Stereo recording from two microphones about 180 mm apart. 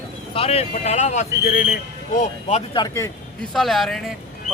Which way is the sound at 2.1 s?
40° left (ahead or behind).